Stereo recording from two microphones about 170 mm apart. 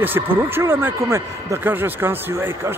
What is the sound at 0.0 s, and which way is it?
Speech, 10° right (ahead or behind).